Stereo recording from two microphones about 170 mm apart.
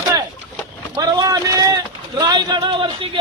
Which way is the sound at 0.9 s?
20° right (ahead or behind).